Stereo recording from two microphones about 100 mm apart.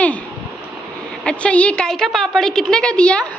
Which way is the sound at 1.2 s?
10° left (ahead or behind).